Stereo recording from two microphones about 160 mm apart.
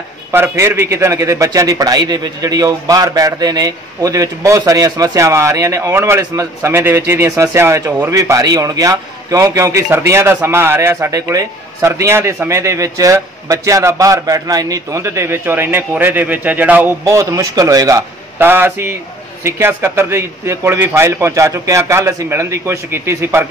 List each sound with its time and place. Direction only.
0.3 s a man's voice: 15° right (ahead or behind)